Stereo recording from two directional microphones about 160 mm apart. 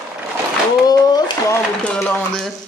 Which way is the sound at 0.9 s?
25° left (ahead or behind).